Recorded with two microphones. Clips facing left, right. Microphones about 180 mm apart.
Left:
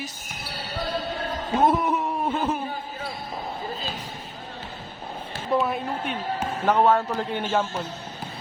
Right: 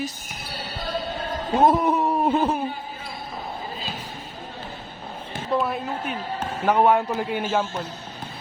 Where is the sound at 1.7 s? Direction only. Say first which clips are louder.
Right 3 dB; 35° right (ahead or behind).